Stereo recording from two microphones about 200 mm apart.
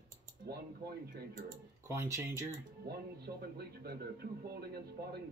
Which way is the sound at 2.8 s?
50° right (ahead or behind).